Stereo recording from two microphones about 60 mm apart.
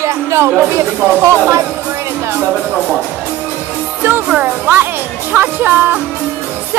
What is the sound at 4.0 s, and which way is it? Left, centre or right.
Speech, right.